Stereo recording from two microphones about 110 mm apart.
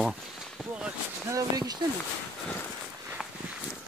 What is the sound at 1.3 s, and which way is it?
Speech, 35° right (ahead or behind).